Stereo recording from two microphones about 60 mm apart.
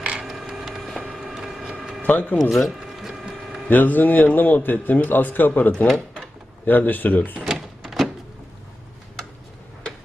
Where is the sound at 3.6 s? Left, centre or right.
Left.